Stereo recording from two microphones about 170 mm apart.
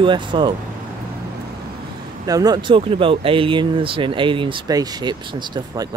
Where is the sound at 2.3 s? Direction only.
20° right (ahead or behind).